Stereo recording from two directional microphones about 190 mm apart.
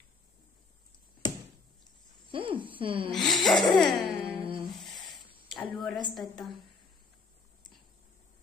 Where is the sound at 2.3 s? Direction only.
25° right (ahead or behind).